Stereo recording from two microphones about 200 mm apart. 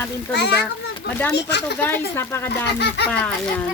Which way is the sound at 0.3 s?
60° left (ahead or behind).